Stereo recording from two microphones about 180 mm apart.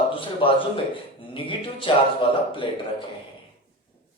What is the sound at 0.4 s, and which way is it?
A man's voice, 30° left (ahead or behind).